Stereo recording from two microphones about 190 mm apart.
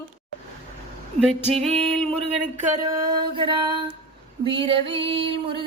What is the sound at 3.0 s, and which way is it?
Music, 25° right (ahead or behind).